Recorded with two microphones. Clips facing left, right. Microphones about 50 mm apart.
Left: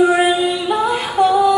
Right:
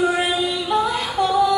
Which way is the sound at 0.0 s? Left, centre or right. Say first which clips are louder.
Left 6 dB; centre.